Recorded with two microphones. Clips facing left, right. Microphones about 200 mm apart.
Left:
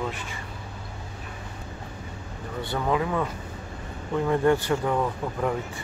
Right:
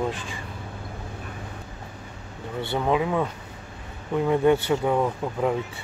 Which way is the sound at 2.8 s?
15° right (ahead or behind).